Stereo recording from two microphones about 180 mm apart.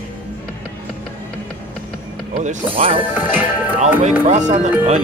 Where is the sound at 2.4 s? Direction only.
35° right (ahead or behind).